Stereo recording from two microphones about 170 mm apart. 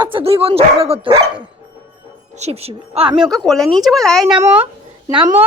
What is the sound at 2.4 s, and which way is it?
Speech, 35° right (ahead or behind).